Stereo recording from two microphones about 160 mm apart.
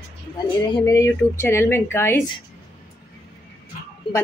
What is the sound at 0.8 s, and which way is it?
Speech, 20° left (ahead or behind).